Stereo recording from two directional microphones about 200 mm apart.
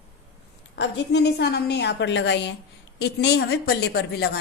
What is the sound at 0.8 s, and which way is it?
A woman's voice, 60° left (ahead or behind).